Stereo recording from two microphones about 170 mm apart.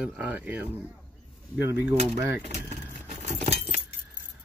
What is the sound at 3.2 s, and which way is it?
Keys jangling, 40° right (ahead or behind).